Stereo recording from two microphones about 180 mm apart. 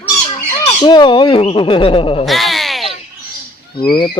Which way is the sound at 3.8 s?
25° left (ahead or behind).